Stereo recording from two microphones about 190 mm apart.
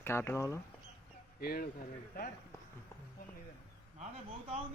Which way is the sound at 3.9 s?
35° right (ahead or behind).